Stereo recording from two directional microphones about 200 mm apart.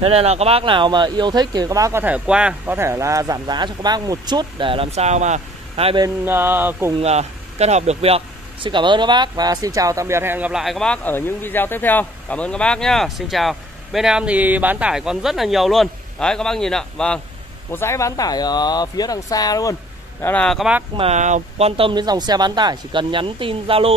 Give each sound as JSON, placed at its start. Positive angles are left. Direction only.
{"t": 0.0, "sound": "speech", "side_deg": -30}
{"t": 6.0, "sound": "a sound", "side_deg": -10}
{"t": 7.0, "sound": "speech", "side_deg": -30}
{"t": 20.9, "sound": "speech", "side_deg": -30}